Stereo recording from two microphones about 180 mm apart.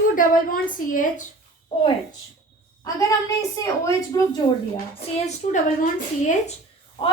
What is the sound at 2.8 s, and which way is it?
Speech, 20° left (ahead or behind).